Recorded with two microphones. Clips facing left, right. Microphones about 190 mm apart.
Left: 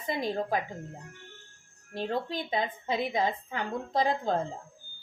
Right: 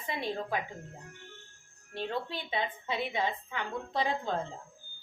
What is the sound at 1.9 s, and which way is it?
A woman's voice, 40° left (ahead or behind).